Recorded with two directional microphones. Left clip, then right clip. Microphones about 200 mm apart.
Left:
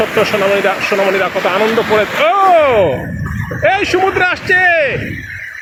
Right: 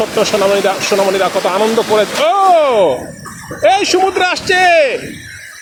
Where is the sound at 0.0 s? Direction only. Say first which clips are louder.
Even; 10° right (ahead or behind).